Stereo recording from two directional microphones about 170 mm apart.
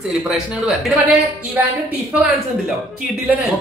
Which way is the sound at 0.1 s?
Centre (ahead or behind).